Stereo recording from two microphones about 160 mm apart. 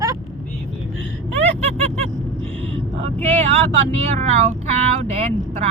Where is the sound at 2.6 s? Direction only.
35° right (ahead or behind).